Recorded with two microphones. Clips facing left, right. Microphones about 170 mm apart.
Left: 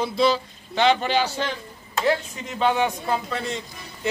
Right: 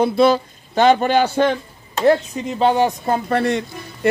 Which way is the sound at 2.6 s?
35° right (ahead or behind).